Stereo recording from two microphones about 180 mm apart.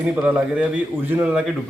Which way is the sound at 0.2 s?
10° right (ahead or behind).